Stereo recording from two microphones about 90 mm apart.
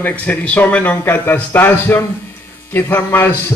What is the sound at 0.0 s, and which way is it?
A man's voice, 20° left (ahead or behind).